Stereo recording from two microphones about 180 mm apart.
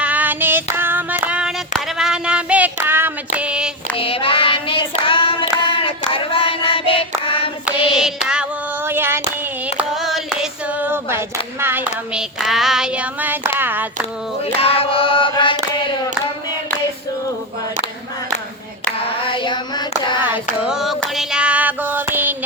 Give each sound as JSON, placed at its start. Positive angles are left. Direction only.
{"t": 0.0, "sound": "child singing", "side_deg": -10}
{"t": 3.9, "sound": "child singing", "side_deg": 30}
{"t": 7.3, "sound": "hands", "side_deg": 30}
{"t": 7.9, "sound": "child singing", "side_deg": -5}
{"t": 9.7, "sound": "hands", "side_deg": 0}
{"t": 11.6, "sound": "child singing", "side_deg": -10}
{"t": 14.6, "sound": "choir", "side_deg": 30}
{"t": 18.9, "sound": "child singing", "side_deg": 30}
{"t": 20.2, "sound": "female singing", "side_deg": -10}